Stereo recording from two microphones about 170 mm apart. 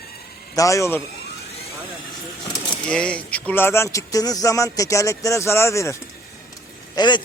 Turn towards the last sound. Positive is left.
turn(degrees=25)  # may be behind; listen again after turning